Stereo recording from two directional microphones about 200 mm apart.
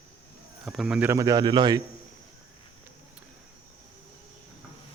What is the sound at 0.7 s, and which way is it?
Speech, centre (ahead or behind).